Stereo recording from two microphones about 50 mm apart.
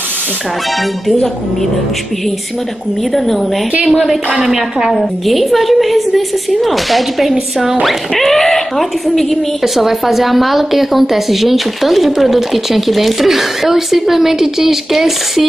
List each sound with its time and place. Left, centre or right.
4.4 s a woman's voice: centre
4.9 s speech: centre